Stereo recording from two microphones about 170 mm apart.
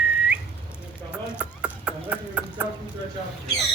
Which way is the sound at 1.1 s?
5° right (ahead or behind).